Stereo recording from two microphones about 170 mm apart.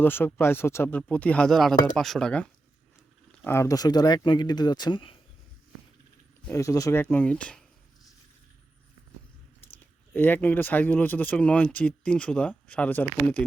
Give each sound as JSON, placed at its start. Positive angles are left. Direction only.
{"t": 0.0, "sound": "speech", "side_deg": 10}
{"t": 6.5, "sound": "speech", "side_deg": 20}
{"t": 9.8, "sound": "speech", "side_deg": 10}